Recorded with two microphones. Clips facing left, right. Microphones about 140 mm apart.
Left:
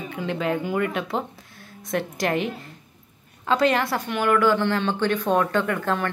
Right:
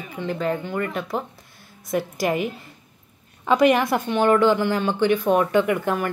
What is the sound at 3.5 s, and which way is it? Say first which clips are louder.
A woman's voice: right 4 dB; 15° right (ahead or behind).